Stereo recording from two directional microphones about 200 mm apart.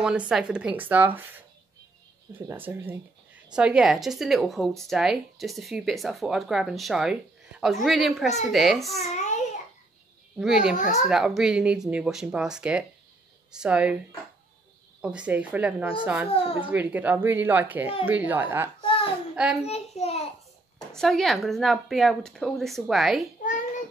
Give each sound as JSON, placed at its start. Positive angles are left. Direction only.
{"t": 0.0, "sound": "a woman's voice", "side_deg": -5}
{"t": 2.3, "sound": "a woman's voice", "side_deg": -10}
{"t": 9.0, "sound": "a sound", "side_deg": 35}
{"t": 10.4, "sound": "a woman's voice", "side_deg": -5}
{"t": 15.0, "sound": "a woman's voice", "side_deg": -5}
{"t": 16.3, "sound": "speech", "side_deg": 30}
{"t": 16.6, "sound": "speech", "side_deg": -10}
{"t": 18.8, "sound": "babbling", "side_deg": 25}
{"t": 19.3, "sound": "a child's voice", "side_deg": -5}
{"t": 19.6, "sound": "a child's voice", "side_deg": 30}
{"t": 20.9, "sound": "a woman's voice", "side_deg": 0}